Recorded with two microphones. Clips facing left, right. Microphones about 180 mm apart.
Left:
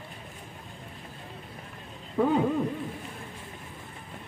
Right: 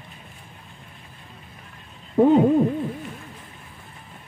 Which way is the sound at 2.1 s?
35° right (ahead or behind).